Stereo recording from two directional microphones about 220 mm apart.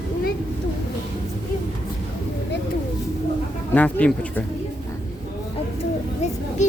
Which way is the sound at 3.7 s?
5° left (ahead or behind).